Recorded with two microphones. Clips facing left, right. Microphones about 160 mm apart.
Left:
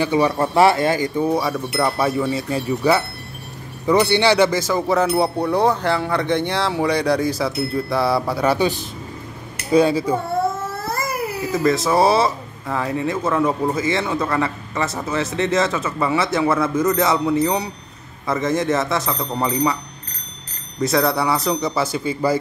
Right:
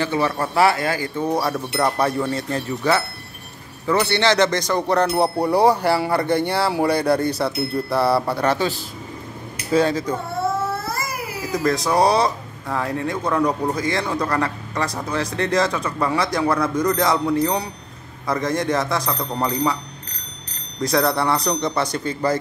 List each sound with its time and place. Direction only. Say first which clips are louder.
0.0 s speech: left 4 dB; 15° left (ahead or behind)
1.2 s speech: left 2 dB; centre (ahead or behind)
8.5 s a sound: left 3 dB; 20° left (ahead or behind)
11.5 s speech: left 2 dB; centre (ahead or behind)
20.8 s speech: left 1 dB; centre (ahead or behind)